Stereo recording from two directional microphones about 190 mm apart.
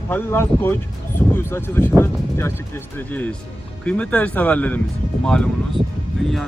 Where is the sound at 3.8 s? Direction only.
5° left (ahead or behind).